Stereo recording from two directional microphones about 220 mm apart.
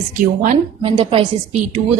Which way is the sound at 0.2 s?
35° right (ahead or behind).